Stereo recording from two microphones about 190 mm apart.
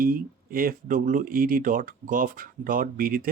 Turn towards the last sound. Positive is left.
turn(degrees=-50)  # may be behind; listen again after turning